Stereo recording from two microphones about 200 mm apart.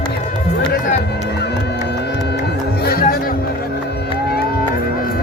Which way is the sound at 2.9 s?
50° left (ahead or behind).